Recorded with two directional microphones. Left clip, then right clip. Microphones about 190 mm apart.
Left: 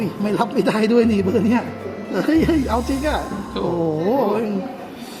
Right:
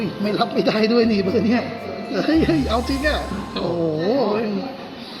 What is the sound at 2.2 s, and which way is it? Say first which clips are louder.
Speech: left 1 dB; 65° left (ahead or behind).